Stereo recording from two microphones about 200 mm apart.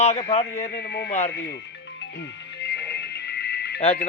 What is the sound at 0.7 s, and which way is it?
Speech, 55° left (ahead or behind).